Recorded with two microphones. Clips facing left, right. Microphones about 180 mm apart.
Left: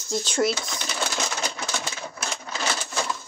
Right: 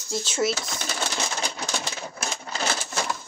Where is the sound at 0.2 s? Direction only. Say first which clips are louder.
Left 1 dB; 5° right (ahead or behind).